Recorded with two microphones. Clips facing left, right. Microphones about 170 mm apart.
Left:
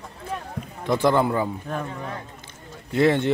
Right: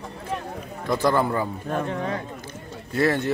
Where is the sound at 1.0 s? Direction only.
15° left (ahead or behind).